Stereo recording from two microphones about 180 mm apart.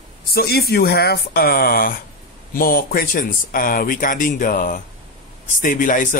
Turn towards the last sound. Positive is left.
turn(degrees=45)  # may be behind; listen again after turning